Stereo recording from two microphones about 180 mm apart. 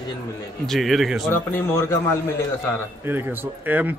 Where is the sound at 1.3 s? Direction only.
15° left (ahead or behind).